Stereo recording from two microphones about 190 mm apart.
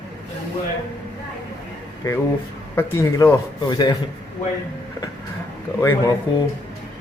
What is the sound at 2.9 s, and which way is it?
A man's voice, 15° left (ahead or behind).